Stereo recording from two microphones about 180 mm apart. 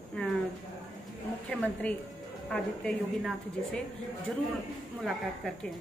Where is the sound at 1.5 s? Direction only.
5° left (ahead or behind).